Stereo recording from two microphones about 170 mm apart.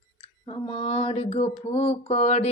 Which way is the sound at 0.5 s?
35° left (ahead or behind).